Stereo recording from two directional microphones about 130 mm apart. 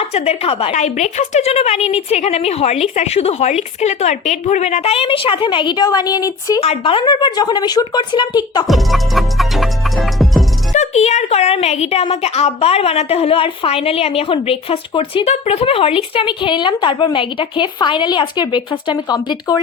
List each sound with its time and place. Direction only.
0.0 s a woman's voice: 55° left (ahead or behind)
0.7 s a woman's voice: 65° left (ahead or behind); by 6.6 s 30° left (ahead or behind)
6.6 s a woman's voice: 45° left (ahead or behind)
8.6 s music: centre (ahead or behind)
10.7 s a woman's voice: 60° left (ahead or behind); by 19.5 s 30° left (ahead or behind)